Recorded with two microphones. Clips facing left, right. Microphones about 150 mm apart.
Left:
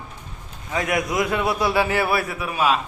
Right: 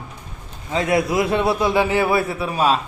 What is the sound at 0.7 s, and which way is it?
A man's voice, 30° right (ahead or behind).